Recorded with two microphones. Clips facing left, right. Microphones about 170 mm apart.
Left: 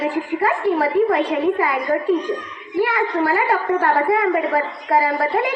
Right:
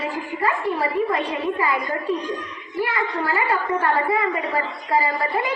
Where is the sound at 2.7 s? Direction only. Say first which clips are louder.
Left 5 dB; 65° left (ahead or behind).